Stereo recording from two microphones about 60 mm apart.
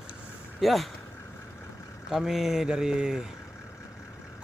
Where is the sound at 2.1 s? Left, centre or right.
Centre.